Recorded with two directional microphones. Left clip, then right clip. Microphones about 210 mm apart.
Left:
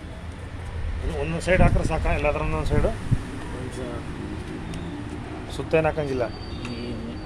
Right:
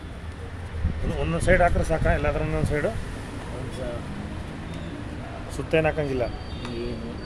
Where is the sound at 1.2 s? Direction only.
20° right (ahead or behind).